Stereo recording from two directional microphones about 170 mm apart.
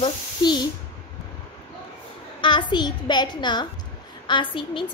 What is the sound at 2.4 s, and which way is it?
A child's voice, 25° left (ahead or behind).